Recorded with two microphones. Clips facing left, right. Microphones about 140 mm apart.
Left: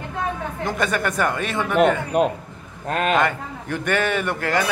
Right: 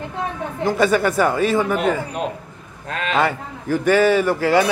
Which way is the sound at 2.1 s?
50° left (ahead or behind).